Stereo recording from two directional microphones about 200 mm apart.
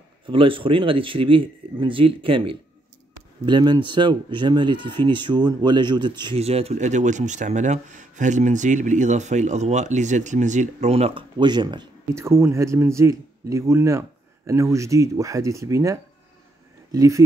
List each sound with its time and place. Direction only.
0.3 s speech: 25° right (ahead or behind)